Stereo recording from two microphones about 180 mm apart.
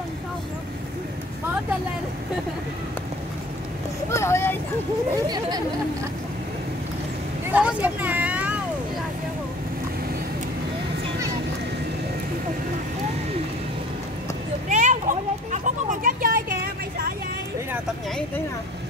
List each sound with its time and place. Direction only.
4.1 s speech: 15° left (ahead or behind)
5.1 s speech: 20° right (ahead or behind)
7.5 s vehicle: 10° right (ahead or behind)
14.7 s a sound: 45° right (ahead or behind)